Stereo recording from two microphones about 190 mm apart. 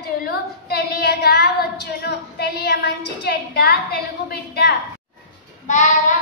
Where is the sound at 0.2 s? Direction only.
55° left (ahead or behind).